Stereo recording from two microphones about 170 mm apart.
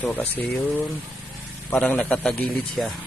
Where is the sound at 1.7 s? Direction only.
5° left (ahead or behind).